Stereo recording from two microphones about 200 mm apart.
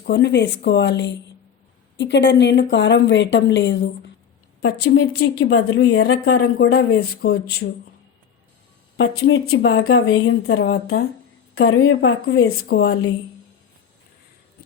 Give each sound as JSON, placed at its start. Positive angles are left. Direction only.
{"t": 0.1, "sound": "a woman's voice", "side_deg": 60}
{"t": 6.3, "sound": "speech", "side_deg": 50}
{"t": 9.0, "sound": "speech", "side_deg": 90}
{"t": 9.6, "sound": "a woman's voice", "side_deg": 75}
{"t": 12.6, "sound": "a woman's voice", "side_deg": 55}